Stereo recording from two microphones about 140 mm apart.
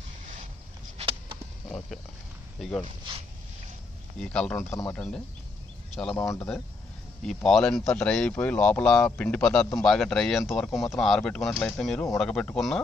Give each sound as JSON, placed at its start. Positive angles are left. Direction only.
{"t": 0.9, "sound": "a sound", "side_deg": -40}
{"t": 4.2, "sound": "speech", "side_deg": 5}
{"t": 4.6, "sound": "speech", "side_deg": 20}
{"t": 6.1, "sound": "speech", "side_deg": 20}
{"t": 7.2, "sound": "speech", "side_deg": 5}